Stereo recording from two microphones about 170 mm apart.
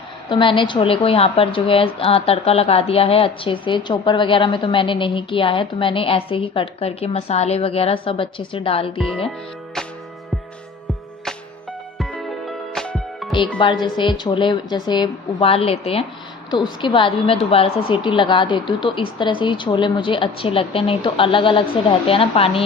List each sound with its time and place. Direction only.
0.3 s a woman's voice: 30° left (ahead or behind)
11.9 s music: centre (ahead or behind)
13.8 s speech: 30° left (ahead or behind)